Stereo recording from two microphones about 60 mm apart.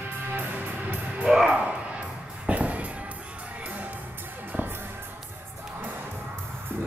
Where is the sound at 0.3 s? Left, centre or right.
Right.